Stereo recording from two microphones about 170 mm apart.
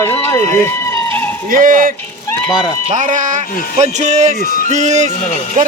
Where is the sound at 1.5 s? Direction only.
50° right (ahead or behind).